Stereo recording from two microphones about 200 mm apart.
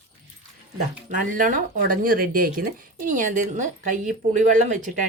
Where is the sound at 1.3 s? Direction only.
40° right (ahead or behind).